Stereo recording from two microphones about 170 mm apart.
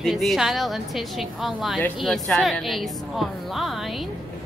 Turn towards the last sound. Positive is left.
turn(degrees=0)  # may be behind; listen again after turning